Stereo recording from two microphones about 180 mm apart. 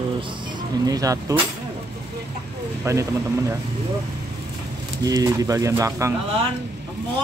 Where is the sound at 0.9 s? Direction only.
20° right (ahead or behind).